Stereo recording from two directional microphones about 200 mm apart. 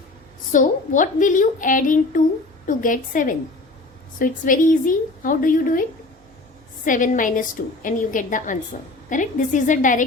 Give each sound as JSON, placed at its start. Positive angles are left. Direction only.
{"t": 0.5, "sound": "a woman's voice", "side_deg": 40}
{"t": 6.8, "sound": "a woman's voice", "side_deg": 40}